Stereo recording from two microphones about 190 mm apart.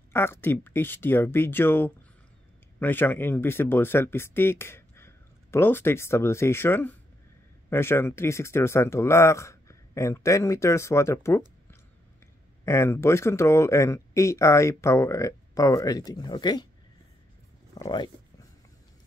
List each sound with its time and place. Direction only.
0.1 s speech: 10° left (ahead or behind)
12.6 s speech: 15° left (ahead or behind)
17.7 s speech: 20° left (ahead or behind)